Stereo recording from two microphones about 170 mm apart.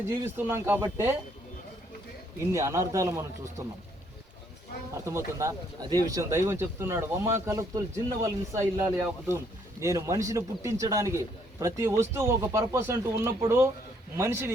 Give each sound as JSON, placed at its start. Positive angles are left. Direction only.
{"t": 0.1, "sound": "speech", "side_deg": -15}
{"t": 2.4, "sound": "speech", "side_deg": -15}
{"t": 5.0, "sound": "a man's voice", "side_deg": -15}